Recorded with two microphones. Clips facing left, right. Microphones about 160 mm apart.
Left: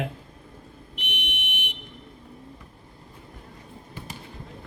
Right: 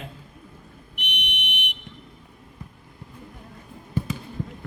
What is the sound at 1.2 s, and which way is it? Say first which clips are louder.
Buzzer: right 3 dB; 60° right (ahead or behind).